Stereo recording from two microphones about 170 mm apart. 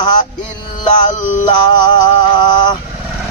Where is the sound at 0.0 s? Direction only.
25° left (ahead or behind).